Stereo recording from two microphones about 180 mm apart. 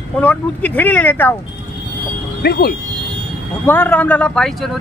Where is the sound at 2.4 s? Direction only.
60° left (ahead or behind).